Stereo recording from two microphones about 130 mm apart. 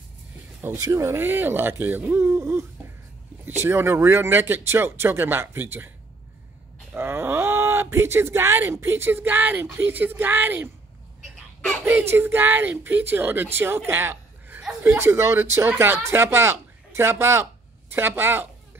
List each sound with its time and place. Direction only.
0.6 s speech: 20° right (ahead or behind)
6.9 s speech: 15° right (ahead or behind)
11.8 s a woman's voice: 20° right (ahead or behind)